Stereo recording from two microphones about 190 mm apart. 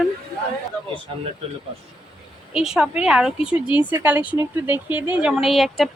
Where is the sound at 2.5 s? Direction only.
5° right (ahead or behind).